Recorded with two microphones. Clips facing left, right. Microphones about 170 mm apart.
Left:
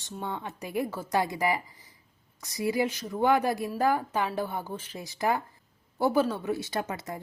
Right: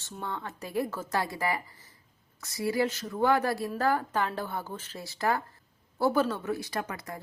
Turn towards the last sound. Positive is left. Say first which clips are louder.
# left 3 dB
turn(degrees=25)  # may be behind; listen again after turning